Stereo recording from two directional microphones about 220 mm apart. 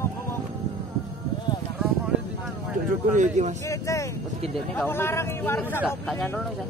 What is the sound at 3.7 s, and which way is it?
A man's voice, 15° left (ahead or behind).